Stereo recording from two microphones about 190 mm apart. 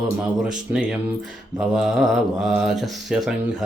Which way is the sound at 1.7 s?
Centre (ahead or behind).